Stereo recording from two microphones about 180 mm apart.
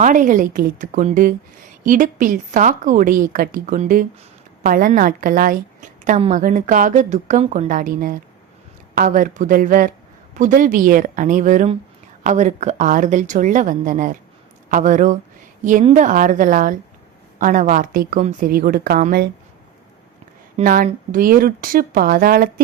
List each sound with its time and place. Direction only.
0.0 s a woman's voice: 45° right (ahead or behind)
6.1 s a woman's voice: 40° right (ahead or behind)
20.6 s a woman's voice: 45° right (ahead or behind)